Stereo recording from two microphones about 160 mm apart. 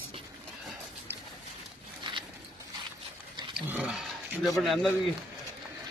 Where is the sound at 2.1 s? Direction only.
30° right (ahead or behind).